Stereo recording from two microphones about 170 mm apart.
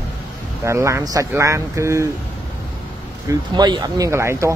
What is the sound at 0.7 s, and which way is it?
Speech, 15° right (ahead or behind).